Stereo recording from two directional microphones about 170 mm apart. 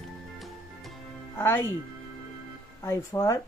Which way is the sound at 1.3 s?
15° left (ahead or behind).